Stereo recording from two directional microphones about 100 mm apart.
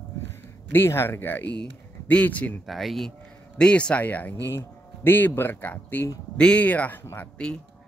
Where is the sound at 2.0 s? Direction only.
15° left (ahead or behind).